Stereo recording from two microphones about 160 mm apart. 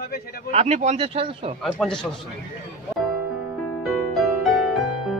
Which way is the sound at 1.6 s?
Centre (ahead or behind).